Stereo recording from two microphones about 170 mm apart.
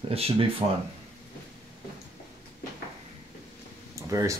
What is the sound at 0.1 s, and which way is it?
Speech, 35° right (ahead or behind).